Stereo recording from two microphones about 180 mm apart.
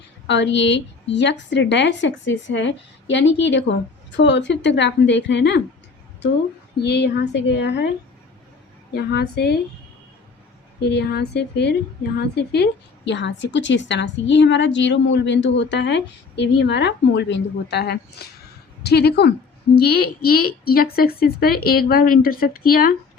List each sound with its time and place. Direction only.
0.3 s a woman's voice: 80° left
6.8 s a woman's voice: 70° left (ahead or behind)
8.9 s speech: 65° left (ahead or behind)
10.8 s a woman's voice: 70° left (ahead or behind)
13.1 s a woman's voice: 80° left; by 23.0 s 55° left (ahead or behind)